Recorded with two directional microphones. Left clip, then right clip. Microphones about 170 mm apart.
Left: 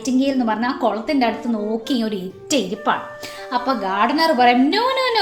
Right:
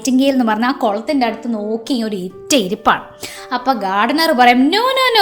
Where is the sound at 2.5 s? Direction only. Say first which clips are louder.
Right 6 dB; 40° right (ahead or behind).